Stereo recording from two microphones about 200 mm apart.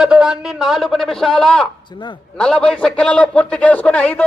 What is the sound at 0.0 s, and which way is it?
A man's voice, 5° right (ahead or behind).